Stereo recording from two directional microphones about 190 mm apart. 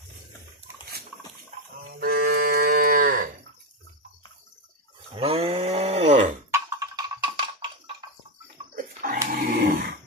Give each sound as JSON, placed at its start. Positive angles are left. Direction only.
{"t": 2.0, "sound": "livestock", "side_deg": -50}
{"t": 5.1, "sound": "a sound", "side_deg": -30}
{"t": 6.5, "sound": "music", "side_deg": -20}
{"t": 8.7, "sound": "dog", "side_deg": -45}